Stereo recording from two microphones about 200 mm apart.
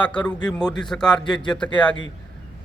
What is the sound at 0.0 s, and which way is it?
Speech, 5° left (ahead or behind).